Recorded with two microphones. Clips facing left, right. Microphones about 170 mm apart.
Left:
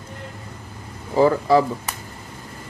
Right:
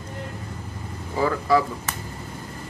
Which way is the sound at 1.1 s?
30° left (ahead or behind).